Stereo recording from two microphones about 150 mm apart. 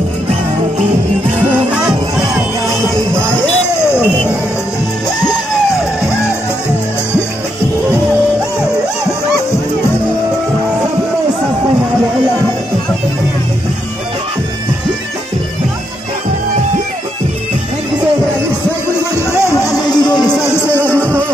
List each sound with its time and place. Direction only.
19.4 s music: 20° left (ahead or behind)
20.8 s music: 15° right (ahead or behind)